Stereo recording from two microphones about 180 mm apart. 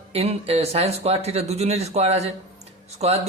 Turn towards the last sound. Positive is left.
turn(degrees=-35)  # may be behind; listen again after turning